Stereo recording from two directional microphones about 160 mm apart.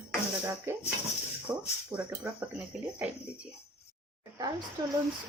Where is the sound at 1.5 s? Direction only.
25° right (ahead or behind).